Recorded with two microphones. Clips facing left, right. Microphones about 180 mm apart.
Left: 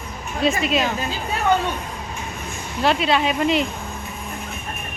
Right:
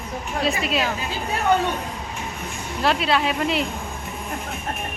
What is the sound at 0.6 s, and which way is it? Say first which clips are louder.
Speech: left 3 dB; centre (ahead or behind).